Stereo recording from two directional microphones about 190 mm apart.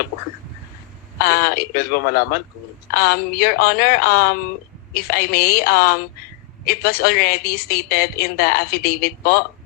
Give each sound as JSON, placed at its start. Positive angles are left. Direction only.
{"t": 1.2, "sound": "a woman's voice", "side_deg": 55}